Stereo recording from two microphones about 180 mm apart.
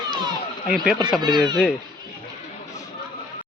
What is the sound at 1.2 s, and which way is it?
Speech, 25° right (ahead or behind).